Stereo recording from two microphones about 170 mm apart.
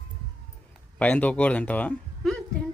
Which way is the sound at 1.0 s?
10° left (ahead or behind).